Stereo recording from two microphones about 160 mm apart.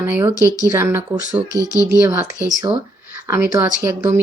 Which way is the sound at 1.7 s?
20° left (ahead or behind).